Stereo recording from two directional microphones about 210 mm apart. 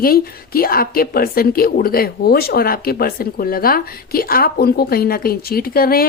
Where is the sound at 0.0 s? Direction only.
45° left (ahead or behind).